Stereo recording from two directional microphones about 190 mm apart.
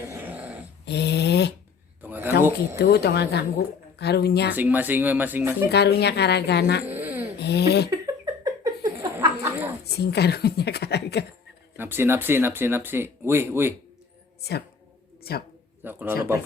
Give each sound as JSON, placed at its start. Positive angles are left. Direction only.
{"t": 0.0, "sound": "dog", "side_deg": -15}
{"t": 0.9, "sound": "a sound", "side_deg": 60}
{"t": 2.0, "sound": "a sound", "side_deg": -10}
{"t": 2.7, "sound": "speech", "side_deg": 60}
{"t": 4.5, "sound": "speech", "side_deg": -10}
{"t": 5.7, "sound": "speech", "side_deg": 60}
{"t": 6.8, "sound": "a sound", "side_deg": -10}
{"t": 7.3, "sound": "speech", "side_deg": 60}
{"t": 7.9, "sound": "a sound", "side_deg": -20}
{"t": 9.8, "sound": "speech", "side_deg": 60}
{"t": 11.8, "sound": "speech", "side_deg": -10}
{"t": 15.2, "sound": "a woman's voice", "side_deg": 55}
{"t": 15.8, "sound": "speech", "side_deg": -10}